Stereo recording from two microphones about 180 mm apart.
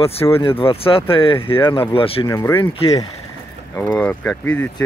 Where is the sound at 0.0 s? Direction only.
35° left (ahead or behind).